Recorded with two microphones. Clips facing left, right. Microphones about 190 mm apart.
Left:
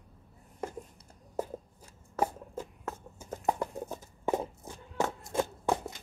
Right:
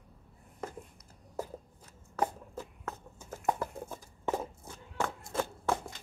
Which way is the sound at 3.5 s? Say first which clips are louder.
Left 1 dB; 15° left (ahead or behind).